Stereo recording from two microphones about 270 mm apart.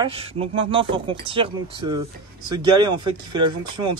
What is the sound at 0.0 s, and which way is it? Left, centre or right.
Speech, right.